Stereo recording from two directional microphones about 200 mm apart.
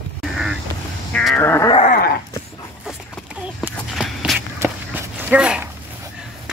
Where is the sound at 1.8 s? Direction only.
50° left (ahead or behind).